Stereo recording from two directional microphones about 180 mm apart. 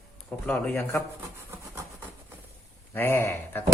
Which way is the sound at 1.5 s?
15° right (ahead or behind).